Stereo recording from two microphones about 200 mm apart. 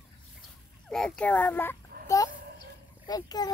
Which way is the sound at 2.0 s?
15° left (ahead or behind).